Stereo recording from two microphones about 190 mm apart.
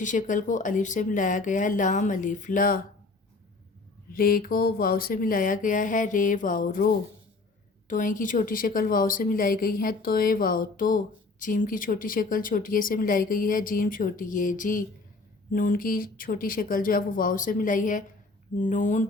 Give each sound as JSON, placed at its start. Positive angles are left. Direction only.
{"t": 0.0, "sound": "speech", "side_deg": 40}
{"t": 4.1, "sound": "speech", "side_deg": 50}